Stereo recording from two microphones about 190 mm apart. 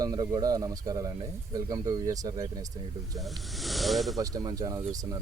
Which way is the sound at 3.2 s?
Centre (ahead or behind).